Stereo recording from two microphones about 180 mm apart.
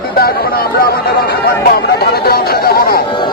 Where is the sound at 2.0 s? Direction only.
60° left (ahead or behind).